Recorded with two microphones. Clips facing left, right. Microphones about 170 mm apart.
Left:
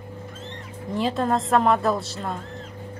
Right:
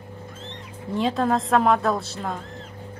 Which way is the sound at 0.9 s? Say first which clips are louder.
Right 1 dB; centre (ahead or behind).